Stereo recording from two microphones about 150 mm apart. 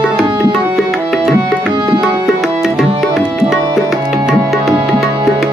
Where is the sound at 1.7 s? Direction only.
30° right (ahead or behind).